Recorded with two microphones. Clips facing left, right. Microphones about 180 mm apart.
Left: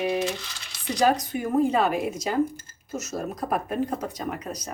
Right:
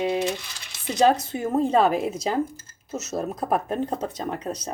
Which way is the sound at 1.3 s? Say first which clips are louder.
Right 1 dB; 25° right (ahead or behind).